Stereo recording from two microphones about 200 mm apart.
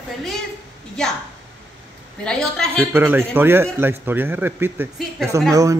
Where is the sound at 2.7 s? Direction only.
10° right (ahead or behind).